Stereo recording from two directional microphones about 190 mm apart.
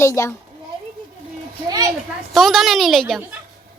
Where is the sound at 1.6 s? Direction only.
20° right (ahead or behind).